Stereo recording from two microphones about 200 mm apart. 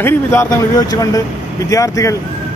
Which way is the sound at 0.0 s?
15° left (ahead or behind).